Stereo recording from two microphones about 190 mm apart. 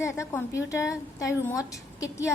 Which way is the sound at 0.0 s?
15° left (ahead or behind).